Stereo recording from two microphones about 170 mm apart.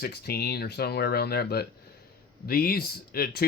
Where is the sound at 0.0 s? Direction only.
70° left (ahead or behind).